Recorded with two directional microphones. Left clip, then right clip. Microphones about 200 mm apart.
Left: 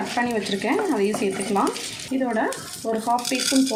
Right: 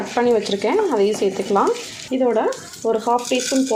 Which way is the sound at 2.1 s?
40° right (ahead or behind).